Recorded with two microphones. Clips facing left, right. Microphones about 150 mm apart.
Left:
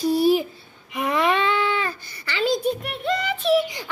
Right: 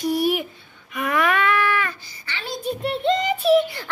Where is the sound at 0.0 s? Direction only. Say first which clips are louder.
Left 3 dB; 30° left (ahead or behind).